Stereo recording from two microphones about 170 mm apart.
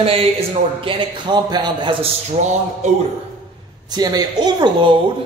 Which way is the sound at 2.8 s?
40° right (ahead or behind).